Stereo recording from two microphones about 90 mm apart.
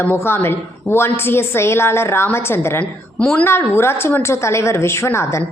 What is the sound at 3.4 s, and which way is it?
A woman's voice, 25° left (ahead or behind).